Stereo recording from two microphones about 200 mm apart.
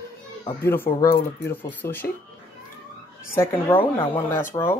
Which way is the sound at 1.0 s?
50° left (ahead or behind).